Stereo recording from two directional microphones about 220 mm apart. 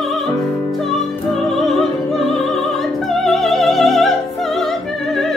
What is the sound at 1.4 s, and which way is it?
Music, centre (ahead or behind).